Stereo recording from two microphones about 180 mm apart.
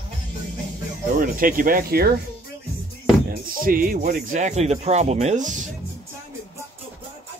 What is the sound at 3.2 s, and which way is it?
Speech, 50° right (ahead or behind).